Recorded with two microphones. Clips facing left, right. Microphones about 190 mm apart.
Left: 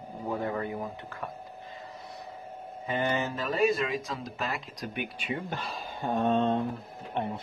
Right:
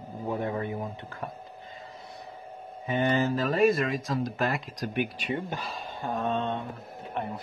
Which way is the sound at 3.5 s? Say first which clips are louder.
Right 1 dB; 55° right (ahead or behind).